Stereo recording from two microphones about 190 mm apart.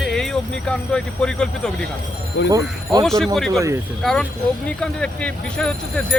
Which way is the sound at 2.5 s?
20° right (ahead or behind).